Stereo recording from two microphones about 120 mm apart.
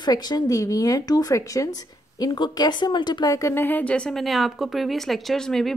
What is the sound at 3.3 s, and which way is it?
A woman's voice, 20° left (ahead or behind).